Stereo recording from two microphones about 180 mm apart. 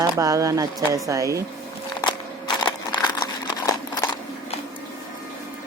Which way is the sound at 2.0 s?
25° left (ahead or behind).